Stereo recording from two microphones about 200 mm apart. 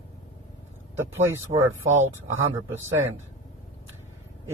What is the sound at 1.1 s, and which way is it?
Speech, 10° right (ahead or behind).